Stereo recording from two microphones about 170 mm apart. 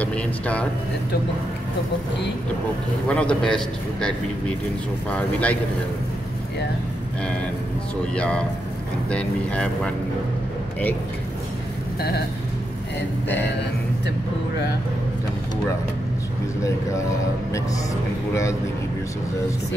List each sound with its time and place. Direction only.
0.0 s speech: 10° left (ahead or behind)
3.1 s a man's voice: 5° left (ahead or behind)
8.0 s a man's voice: 5° left (ahead or behind)
18.3 s a man's voice: 15° left (ahead or behind)